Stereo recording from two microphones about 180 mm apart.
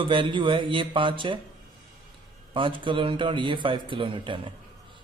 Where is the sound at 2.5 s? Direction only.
25° right (ahead or behind).